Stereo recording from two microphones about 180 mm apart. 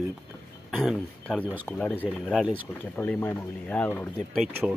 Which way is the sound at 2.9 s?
5° left (ahead or behind).